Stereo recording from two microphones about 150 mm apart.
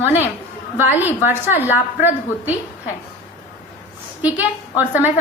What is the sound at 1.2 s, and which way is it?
A woman's voice, 15° right (ahead or behind).